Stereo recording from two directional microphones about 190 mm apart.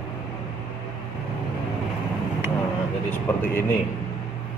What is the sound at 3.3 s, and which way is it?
Speech, 10° left (ahead or behind).